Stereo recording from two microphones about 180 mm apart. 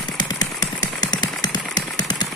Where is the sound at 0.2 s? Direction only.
20° left (ahead or behind).